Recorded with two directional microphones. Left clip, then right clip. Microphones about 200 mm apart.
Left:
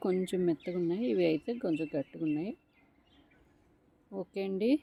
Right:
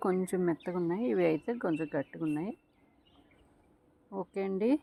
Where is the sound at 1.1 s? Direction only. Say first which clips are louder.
Right 1 dB; 25° right (ahead or behind).